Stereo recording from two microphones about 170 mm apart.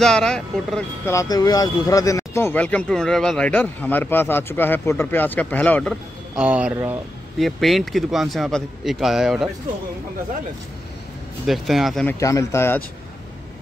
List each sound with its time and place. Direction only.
0.0 s speech: 5° left (ahead or behind)
1.0 s speech: 20° left (ahead or behind)
6.3 s speech: 5° right (ahead or behind)
7.3 s speech: centre (ahead or behind)
11.4 s speech: centre (ahead or behind)
12.2 s speech: 20° left (ahead or behind)